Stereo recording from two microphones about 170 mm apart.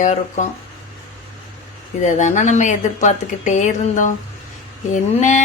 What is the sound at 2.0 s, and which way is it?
Speech, 45° left (ahead or behind).